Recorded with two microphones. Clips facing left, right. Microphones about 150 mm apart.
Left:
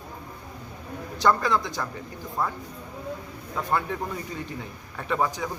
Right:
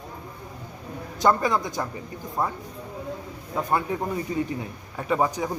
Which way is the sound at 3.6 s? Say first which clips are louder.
Right 2 dB; 20° right (ahead or behind).